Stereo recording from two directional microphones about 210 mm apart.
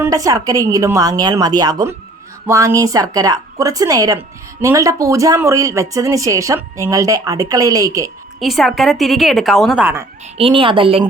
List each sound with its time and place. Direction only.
0.0 s speech: 15° right (ahead or behind)
8.4 s a woman's voice: centre (ahead or behind)
10.3 s speech: 25° right (ahead or behind)